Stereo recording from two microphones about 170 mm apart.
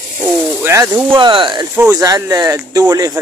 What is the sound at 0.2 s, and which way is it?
Speech, 15° right (ahead or behind).